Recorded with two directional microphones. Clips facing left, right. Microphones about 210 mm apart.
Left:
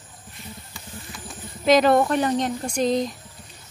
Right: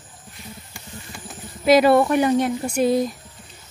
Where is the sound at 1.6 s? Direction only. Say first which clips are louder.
Right 2 dB; 5° right (ahead or behind).